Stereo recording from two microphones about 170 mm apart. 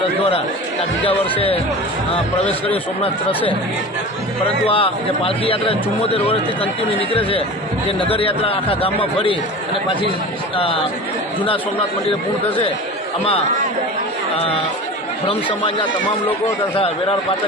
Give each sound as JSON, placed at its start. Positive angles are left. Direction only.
{"t": 0.2, "sound": "a man's voice", "side_deg": 35}
{"t": 4.6, "sound": "a man's voice", "side_deg": 35}
{"t": 15.3, "sound": "a man's voice", "side_deg": 30}